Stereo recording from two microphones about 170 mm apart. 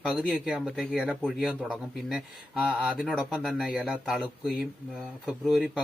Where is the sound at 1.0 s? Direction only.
5° left (ahead or behind).